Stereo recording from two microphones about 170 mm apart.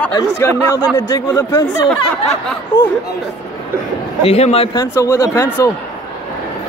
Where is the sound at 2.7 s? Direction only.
15° left (ahead or behind).